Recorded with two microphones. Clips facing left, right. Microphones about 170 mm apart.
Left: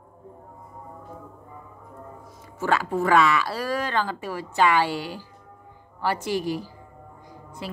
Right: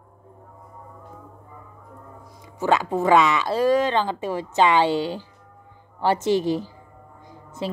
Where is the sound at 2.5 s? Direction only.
20° right (ahead or behind).